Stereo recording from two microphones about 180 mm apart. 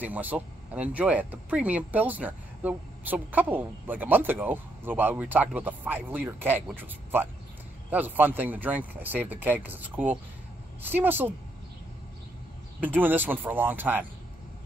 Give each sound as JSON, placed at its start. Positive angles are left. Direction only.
{"t": 0.0, "sound": "speech", "side_deg": -10}
{"t": 12.8, "sound": "speech", "side_deg": -10}